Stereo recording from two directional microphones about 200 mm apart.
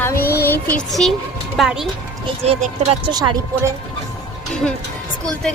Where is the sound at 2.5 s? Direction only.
30° right (ahead or behind).